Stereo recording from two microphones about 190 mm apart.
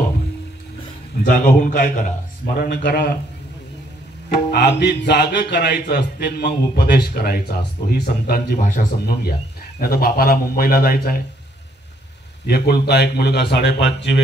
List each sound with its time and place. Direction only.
1.2 s a man's voice: 45° left (ahead or behind)
4.3 s music: 60° left (ahead or behind)
9.8 s a man's voice: 50° left (ahead or behind)
12.4 s music: 55° left (ahead or behind)